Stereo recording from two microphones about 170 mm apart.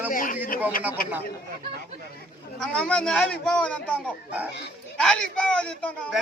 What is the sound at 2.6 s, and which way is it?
A man's voice, 5° left (ahead or behind).